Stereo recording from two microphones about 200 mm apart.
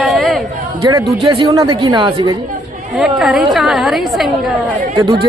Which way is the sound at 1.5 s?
15° right (ahead or behind).